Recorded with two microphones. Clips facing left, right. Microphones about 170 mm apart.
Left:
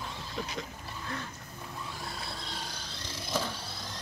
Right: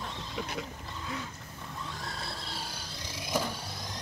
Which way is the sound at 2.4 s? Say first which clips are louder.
Even; 10° right (ahead or behind).